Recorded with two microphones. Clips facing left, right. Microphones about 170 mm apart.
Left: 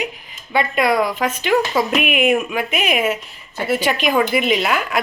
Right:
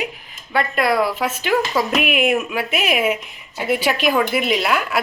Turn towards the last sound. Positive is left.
turn(degrees=0)  # may be behind; listen again after turning